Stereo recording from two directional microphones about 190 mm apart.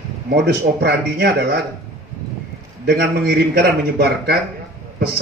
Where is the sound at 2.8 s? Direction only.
55° right (ahead or behind).